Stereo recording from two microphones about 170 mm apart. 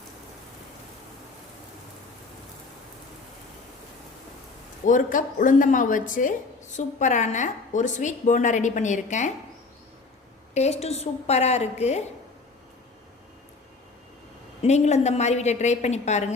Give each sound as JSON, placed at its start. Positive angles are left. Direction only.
{"t": 4.9, "sound": "a woman's voice", "side_deg": 50}
{"t": 10.5, "sound": "a woman's voice", "side_deg": 40}
{"t": 14.6, "sound": "a woman's voice", "side_deg": 40}